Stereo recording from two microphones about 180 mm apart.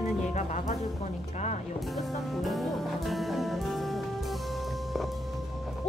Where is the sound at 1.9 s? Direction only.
Centre (ahead or behind).